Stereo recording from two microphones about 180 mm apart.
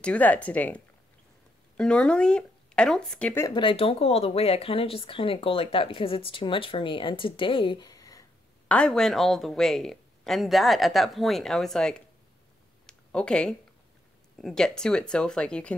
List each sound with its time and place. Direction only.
0.0 s speech: 10° left (ahead or behind)
3.4 s speech: 25° left (ahead or behind)
8.6 s speech: 5° left (ahead or behind)
12.8 s a sound: 5° left (ahead or behind)
14.4 s speech: 5° left (ahead or behind)